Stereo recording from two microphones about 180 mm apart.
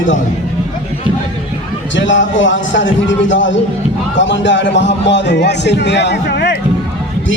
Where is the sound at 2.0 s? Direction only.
90° left; by 6.6 s 70° left (ahead or behind).